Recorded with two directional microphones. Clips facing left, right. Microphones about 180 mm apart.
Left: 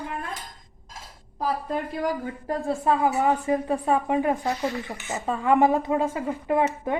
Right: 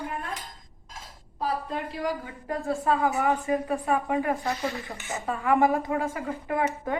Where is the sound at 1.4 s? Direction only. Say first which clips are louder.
Left 3 dB; 45° left (ahead or behind).